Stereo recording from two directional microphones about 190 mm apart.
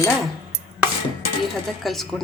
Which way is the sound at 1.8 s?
Centre (ahead or behind).